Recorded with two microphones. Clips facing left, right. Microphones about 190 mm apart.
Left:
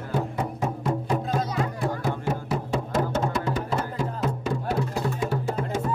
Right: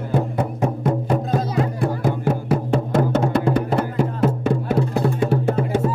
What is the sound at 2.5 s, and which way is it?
Music, 60° right (ahead or behind).